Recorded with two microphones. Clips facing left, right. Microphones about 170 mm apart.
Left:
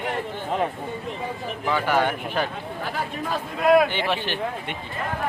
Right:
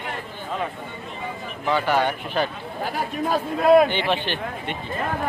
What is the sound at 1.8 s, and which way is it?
Speech, 10° left (ahead or behind).